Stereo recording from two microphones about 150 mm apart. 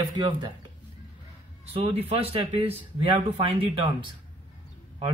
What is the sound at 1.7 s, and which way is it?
Speech, 40° right (ahead or behind).